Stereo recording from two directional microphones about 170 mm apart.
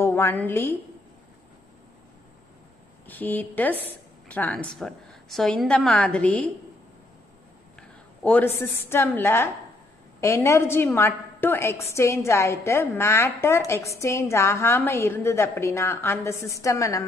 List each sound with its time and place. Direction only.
0.0 s a woman's voice: 15° left (ahead or behind)
3.1 s a woman's voice: 10° left (ahead or behind)
8.2 s a woman's voice: 10° left (ahead or behind)